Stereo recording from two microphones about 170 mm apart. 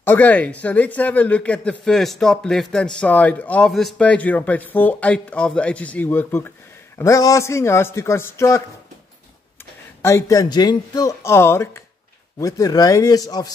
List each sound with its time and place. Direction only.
0.0 s a man's voice: 10° left (ahead or behind)
10.0 s speech: 15° left (ahead or behind)